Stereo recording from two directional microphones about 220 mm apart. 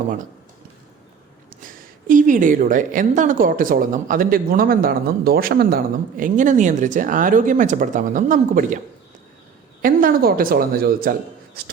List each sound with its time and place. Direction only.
1.5 s a woman's voice: 40° right (ahead or behind)
9.8 s a woman's voice: 40° right (ahead or behind)